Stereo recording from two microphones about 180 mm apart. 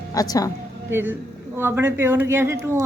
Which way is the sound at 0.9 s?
15° right (ahead or behind).